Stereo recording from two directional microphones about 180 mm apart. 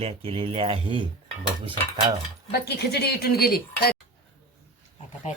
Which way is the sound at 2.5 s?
60° left (ahead or behind).